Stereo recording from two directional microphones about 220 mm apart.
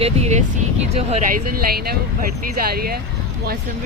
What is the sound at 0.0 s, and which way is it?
Speech, 30° right (ahead or behind).